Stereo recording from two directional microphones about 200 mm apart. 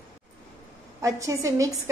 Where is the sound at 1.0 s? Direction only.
15° right (ahead or behind).